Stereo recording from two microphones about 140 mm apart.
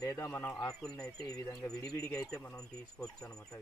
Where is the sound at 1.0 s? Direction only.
25° left (ahead or behind).